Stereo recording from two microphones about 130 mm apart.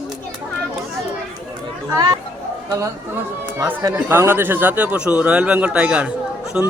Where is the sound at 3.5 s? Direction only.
15° right (ahead or behind).